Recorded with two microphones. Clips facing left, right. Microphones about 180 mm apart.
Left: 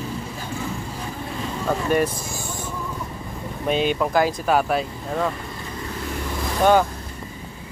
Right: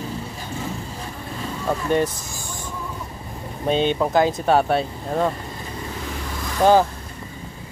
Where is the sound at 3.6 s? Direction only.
30° right (ahead or behind).